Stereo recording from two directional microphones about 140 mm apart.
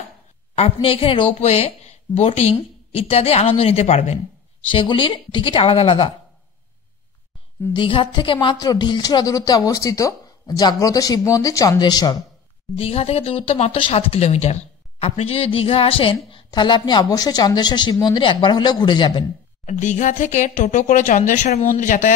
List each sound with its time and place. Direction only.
0.6 s speech: 45° left (ahead or behind)
4.6 s speech: 35° left (ahead or behind)
7.7 s a woman's voice: 35° left (ahead or behind)
12.7 s speech: 45° left (ahead or behind)
19.6 s speech: 60° left (ahead or behind)